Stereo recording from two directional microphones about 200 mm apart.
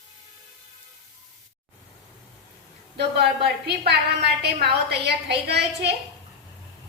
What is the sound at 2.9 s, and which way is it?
A woman's voice, 55° right (ahead or behind).